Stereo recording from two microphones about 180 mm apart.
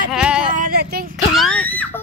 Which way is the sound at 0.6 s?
60° right (ahead or behind).